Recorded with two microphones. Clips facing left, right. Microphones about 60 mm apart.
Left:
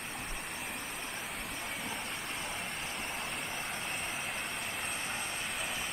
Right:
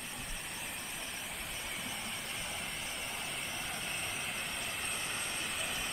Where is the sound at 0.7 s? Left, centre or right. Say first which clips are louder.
Left 3 dB; centre.